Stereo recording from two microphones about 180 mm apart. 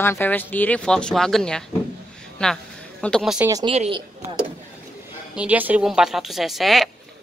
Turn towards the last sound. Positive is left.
turn(degrees=0)  # may be behind; listen again after turning